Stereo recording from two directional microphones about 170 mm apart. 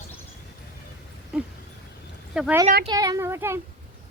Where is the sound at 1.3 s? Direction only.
5° right (ahead or behind).